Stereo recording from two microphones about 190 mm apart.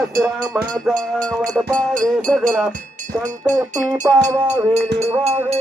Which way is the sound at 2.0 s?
5° left (ahead or behind).